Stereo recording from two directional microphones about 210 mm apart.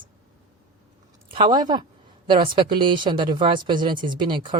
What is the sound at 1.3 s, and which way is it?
Speech, 20° right (ahead or behind).